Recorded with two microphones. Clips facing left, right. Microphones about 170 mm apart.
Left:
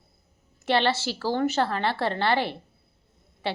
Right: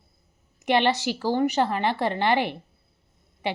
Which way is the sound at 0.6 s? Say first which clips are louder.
Right 2 dB; 15° right (ahead or behind).